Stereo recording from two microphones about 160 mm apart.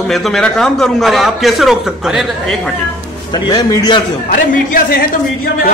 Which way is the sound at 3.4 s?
25° left (ahead or behind).